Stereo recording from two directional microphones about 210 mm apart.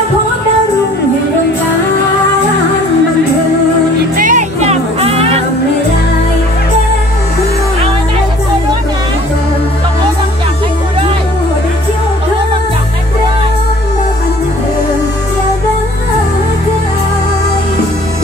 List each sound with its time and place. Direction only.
4.2 s music: 35° right (ahead or behind)